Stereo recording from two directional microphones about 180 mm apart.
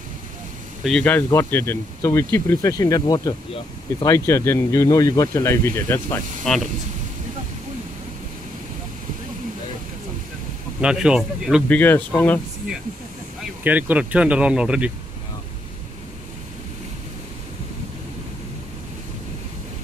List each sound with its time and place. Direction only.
0.8 s speech: 5° left (ahead or behind)
10.8 s speech: 5° right (ahead or behind)
11.7 s speech: 10° left (ahead or behind)
13.7 s speech: 10° right (ahead or behind)